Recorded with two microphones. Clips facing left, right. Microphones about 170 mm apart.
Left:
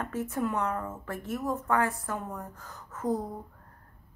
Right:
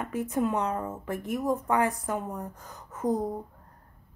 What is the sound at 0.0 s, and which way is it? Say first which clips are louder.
Speech: right 3 dB; 15° right (ahead or behind).